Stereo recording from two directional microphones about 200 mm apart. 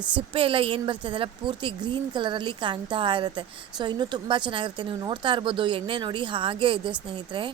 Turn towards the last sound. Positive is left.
turn(degrees=-25)  # may be behind; listen again after turning